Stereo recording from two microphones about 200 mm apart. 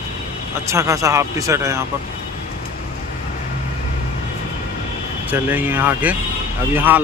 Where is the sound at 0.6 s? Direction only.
15° right (ahead or behind).